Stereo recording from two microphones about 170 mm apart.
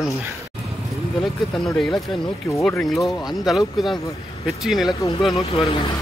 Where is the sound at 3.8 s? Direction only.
Centre (ahead or behind).